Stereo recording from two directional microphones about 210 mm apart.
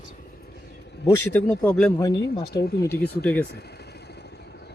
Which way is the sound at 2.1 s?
55° left (ahead or behind).